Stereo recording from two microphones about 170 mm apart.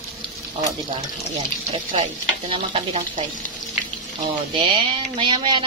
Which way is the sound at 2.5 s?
35° right (ahead or behind).